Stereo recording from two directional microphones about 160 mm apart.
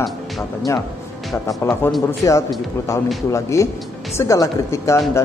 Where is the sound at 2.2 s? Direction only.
20° left (ahead or behind).